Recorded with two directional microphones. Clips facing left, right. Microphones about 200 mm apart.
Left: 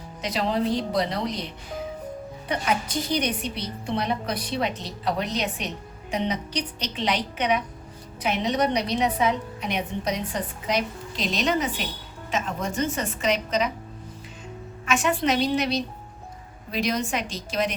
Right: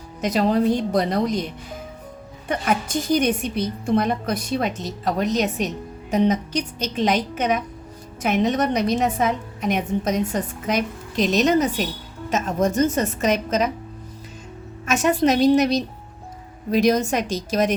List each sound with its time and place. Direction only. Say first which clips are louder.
0.2 s a woman's voice: right 6 dB; 45° right (ahead or behind)
14.8 s a woman's voice: right 5 dB; 40° right (ahead or behind)